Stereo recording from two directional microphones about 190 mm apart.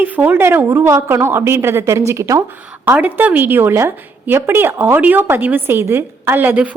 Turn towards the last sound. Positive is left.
turn(degrees=-10)  # may be behind; listen again after turning